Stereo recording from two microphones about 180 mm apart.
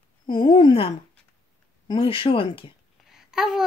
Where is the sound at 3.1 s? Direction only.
Centre (ahead or behind).